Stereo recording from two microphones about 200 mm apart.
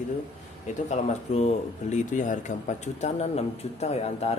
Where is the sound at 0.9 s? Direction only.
35° left (ahead or behind).